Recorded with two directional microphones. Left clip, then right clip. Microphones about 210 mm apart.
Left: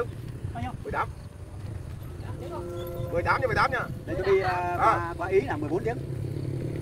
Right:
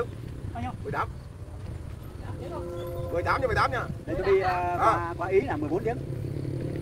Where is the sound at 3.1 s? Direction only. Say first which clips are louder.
Left 1 dB; 45° right (ahead or behind).